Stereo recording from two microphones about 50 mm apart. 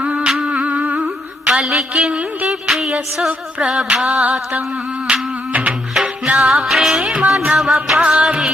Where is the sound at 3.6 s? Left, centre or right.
Centre.